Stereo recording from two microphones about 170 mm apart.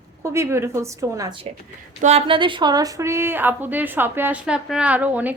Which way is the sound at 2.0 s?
40° right (ahead or behind).